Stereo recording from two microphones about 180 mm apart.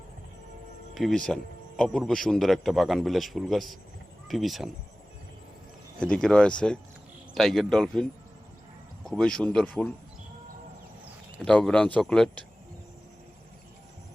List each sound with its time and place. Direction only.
0.9 s speech: centre (ahead or behind)
6.0 s speech: 5° left (ahead or behind)
9.0 s speech: 5° left (ahead or behind)
11.3 s speech: 5° left (ahead or behind)